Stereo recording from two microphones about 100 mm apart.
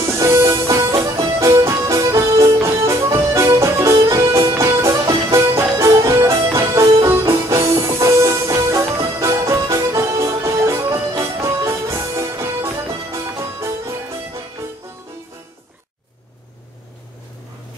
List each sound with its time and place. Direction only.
0.0 s music: 30° right (ahead or behind)